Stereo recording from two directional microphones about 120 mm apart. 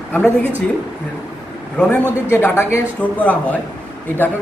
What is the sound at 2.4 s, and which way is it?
Speech, 20° left (ahead or behind).